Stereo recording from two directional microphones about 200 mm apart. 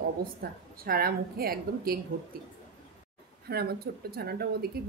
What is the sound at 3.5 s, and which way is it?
A woman's voice, 50° right (ahead or behind).